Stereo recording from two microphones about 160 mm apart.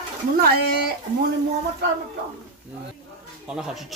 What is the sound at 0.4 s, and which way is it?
Speech, 80° right.